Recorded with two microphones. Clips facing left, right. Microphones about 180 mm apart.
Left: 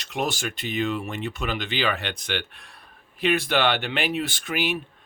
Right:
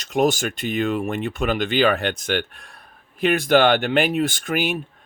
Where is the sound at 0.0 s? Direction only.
45° right (ahead or behind).